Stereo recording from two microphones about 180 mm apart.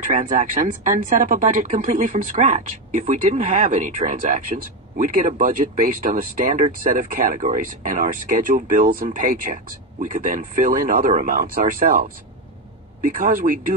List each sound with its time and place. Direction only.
0.0 s speech: 45° right (ahead or behind)